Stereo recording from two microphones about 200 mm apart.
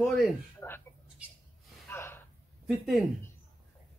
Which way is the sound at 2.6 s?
Centre (ahead or behind).